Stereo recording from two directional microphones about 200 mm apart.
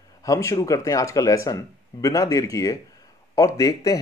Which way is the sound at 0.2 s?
15° left (ahead or behind).